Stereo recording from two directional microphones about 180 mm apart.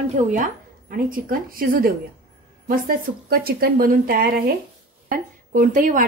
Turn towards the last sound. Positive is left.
turn(degrees=-45)  # may be behind; listen again after turning